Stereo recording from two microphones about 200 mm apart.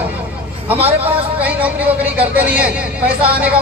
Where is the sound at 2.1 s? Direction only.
5° right (ahead or behind).